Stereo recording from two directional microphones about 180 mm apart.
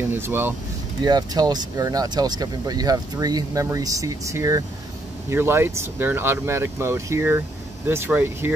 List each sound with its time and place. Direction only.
0.1 s speech: 10° right (ahead or behind)
1.0 s speech: 25° right (ahead or behind)